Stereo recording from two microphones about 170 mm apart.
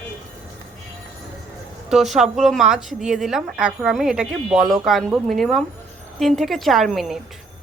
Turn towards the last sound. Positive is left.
turn(degrees=0)  # may be behind; listen again after turning